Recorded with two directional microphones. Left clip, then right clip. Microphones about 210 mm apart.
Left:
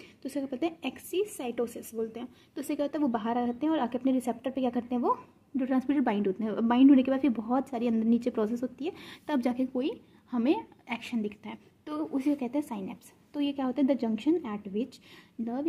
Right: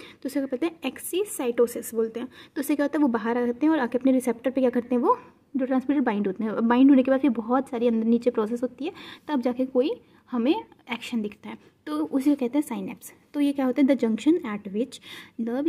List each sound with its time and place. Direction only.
0.0 s a woman's voice: 20° right (ahead or behind)